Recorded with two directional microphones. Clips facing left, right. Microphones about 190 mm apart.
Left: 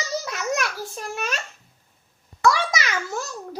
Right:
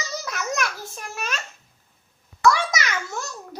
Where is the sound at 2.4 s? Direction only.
30° left (ahead or behind).